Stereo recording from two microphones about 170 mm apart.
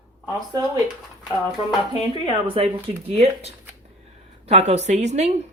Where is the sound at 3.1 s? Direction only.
40° right (ahead or behind).